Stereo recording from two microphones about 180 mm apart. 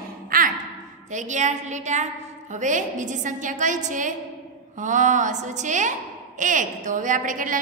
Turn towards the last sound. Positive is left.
turn(degrees=-50)  # may be behind; listen again after turning